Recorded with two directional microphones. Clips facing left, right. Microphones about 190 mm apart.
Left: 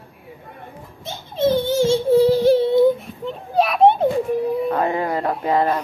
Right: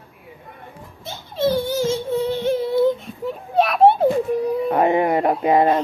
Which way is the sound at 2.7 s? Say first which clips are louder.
Left 3 dB; 15° left (ahead or behind).